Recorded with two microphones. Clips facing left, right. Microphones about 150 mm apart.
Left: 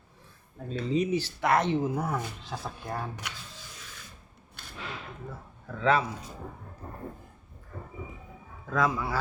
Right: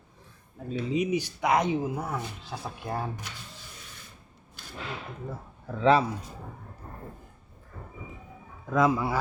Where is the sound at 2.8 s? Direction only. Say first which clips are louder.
Right 3 dB; 25° right (ahead or behind).